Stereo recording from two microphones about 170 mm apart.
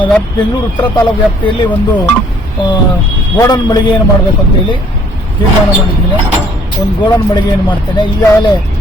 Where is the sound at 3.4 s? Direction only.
25° left (ahead or behind).